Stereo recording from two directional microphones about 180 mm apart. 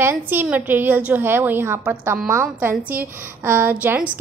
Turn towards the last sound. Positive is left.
turn(degrees=-10)  # may be behind; listen again after turning